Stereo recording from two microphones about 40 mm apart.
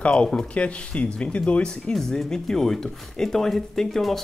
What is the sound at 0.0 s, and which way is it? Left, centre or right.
Speech, left.